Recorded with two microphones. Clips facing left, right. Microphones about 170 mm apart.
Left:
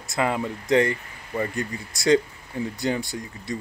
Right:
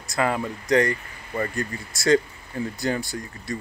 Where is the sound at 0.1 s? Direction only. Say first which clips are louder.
Even; 20° left (ahead or behind).